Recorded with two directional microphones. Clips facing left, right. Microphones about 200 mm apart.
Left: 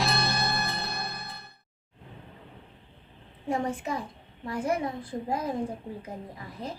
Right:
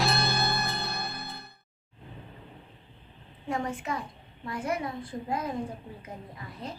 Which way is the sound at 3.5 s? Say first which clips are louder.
Left 2 dB; 30° left (ahead or behind).